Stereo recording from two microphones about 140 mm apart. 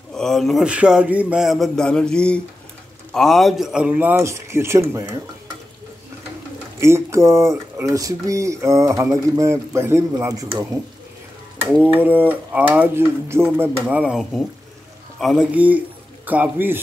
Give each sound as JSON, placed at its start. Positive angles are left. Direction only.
{"t": 0.1, "sound": "a man's voice", "side_deg": 5}
{"t": 6.8, "sound": "speech", "side_deg": -20}
{"t": 11.9, "sound": "a man's voice", "side_deg": -15}
{"t": 15.5, "sound": "a man's voice", "side_deg": -10}